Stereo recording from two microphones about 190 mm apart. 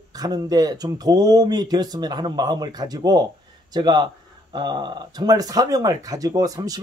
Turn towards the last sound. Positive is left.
turn(degrees=-20)  # may be behind; listen again after turning